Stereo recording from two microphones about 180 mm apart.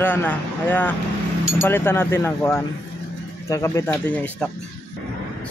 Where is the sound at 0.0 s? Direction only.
10° left (ahead or behind).